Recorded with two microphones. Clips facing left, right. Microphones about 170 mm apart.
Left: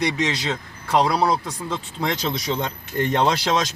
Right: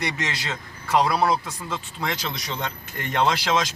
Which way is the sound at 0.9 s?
15° left (ahead or behind).